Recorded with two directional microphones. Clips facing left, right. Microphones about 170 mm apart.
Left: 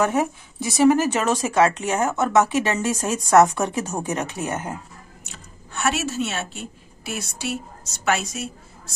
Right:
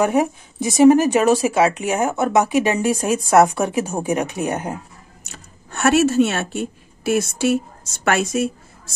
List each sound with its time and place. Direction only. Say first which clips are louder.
0.0 s a woman's voice: right 3 dB; 15° right (ahead or behind)
5.2 s speech: right 1 dB; 45° right (ahead or behind)